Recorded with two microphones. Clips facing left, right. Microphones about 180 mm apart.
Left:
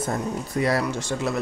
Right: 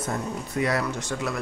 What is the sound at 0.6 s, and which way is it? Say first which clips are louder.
Speech: left 2 dB; 35° left (ahead or behind).